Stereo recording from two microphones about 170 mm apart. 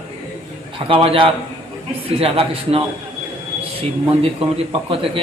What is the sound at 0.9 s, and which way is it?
A man's voice, 35° right (ahead or behind).